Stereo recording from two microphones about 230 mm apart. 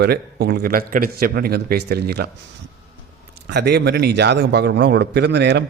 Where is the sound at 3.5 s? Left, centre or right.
Right.